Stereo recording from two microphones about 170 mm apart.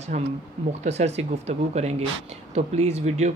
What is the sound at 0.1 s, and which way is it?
Speech, 45° right (ahead or behind).